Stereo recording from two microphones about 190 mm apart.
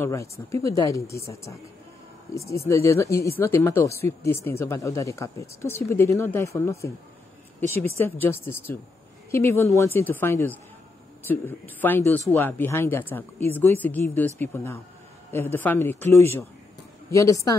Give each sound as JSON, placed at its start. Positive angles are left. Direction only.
{"t": 0.0, "sound": "speech", "side_deg": 15}
{"t": 8.2, "sound": "speech", "side_deg": 10}